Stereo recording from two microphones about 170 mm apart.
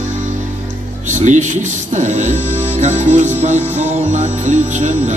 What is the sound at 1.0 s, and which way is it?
Speech, 45° right (ahead or behind).